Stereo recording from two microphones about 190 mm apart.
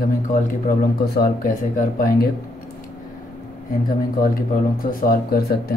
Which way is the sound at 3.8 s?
50° left (ahead or behind).